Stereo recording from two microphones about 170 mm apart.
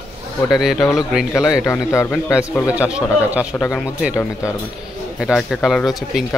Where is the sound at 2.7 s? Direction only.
10° right (ahead or behind).